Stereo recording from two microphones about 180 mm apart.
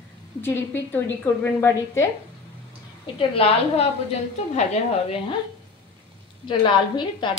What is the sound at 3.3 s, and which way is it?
A woman's voice, 30° left (ahead or behind).